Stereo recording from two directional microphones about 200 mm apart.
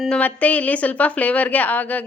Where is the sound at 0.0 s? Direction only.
5° left (ahead or behind).